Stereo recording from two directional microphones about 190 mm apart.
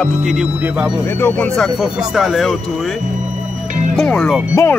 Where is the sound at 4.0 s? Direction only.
5° left (ahead or behind).